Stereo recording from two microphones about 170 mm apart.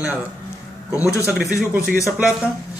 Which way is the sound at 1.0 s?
15° left (ahead or behind).